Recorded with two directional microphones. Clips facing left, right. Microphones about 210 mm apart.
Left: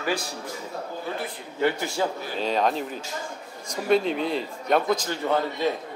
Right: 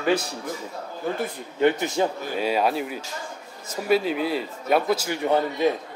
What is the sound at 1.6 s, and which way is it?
Speech, 20° right (ahead or behind).